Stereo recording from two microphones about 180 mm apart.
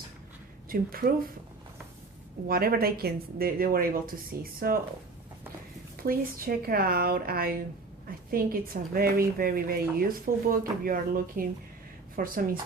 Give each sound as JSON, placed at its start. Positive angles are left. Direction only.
{"t": 0.7, "sound": "a woman's voice", "side_deg": -55}
{"t": 2.5, "sound": "a woman's voice", "side_deg": -55}
{"t": 6.0, "sound": "a woman's voice", "side_deg": -55}